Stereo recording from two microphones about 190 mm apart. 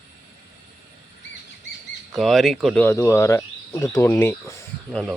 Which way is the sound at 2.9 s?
15° left (ahead or behind).